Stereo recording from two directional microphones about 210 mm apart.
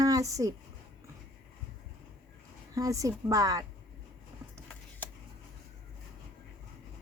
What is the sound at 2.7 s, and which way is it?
Speech, 15° right (ahead or behind).